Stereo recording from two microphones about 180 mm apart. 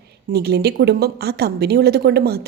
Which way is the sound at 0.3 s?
60° right (ahead or behind).